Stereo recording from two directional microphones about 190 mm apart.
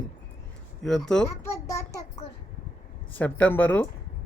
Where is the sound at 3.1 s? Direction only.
10° left (ahead or behind).